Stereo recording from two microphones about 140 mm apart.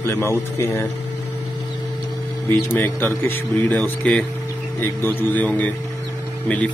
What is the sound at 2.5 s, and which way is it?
Speech, 15° left (ahead or behind).